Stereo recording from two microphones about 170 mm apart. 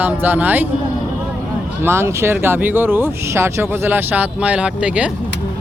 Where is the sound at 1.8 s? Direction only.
15° right (ahead or behind).